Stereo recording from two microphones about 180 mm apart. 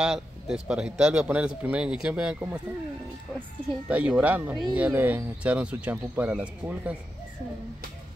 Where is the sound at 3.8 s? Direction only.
5° right (ahead or behind).